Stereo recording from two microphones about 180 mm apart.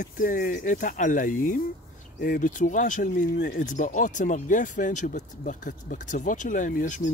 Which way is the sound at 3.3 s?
65° left (ahead or behind).